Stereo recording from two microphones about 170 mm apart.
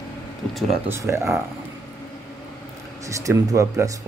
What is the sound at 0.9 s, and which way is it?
Speech, 15° right (ahead or behind).